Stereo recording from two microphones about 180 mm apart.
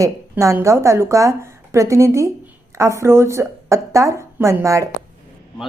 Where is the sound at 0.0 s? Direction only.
15° right (ahead or behind).